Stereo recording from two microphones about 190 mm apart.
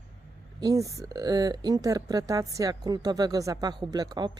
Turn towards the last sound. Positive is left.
turn(degrees=-20)  # may be behind; listen again after turning